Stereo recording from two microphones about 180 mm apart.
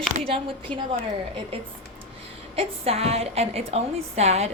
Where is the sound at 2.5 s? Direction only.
35° right (ahead or behind).